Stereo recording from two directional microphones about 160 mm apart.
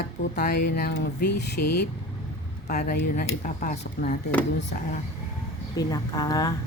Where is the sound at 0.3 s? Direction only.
80° left.